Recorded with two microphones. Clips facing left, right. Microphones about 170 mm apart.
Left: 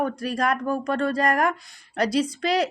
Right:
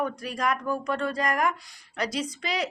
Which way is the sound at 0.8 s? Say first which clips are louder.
Left 4 dB; 55° left (ahead or behind).